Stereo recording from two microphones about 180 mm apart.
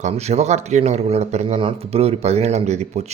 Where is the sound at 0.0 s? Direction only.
40° right (ahead or behind).